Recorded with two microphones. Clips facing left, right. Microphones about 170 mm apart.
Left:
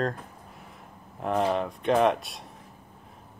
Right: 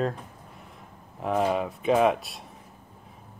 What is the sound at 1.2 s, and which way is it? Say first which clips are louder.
Speech: right 1 dB; 5° right (ahead or behind).